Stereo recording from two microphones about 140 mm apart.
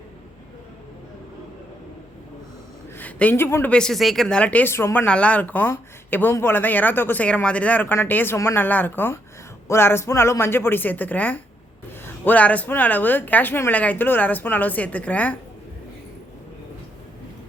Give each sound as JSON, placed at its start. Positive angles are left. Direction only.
{"t": 3.0, "sound": "speech", "side_deg": 10}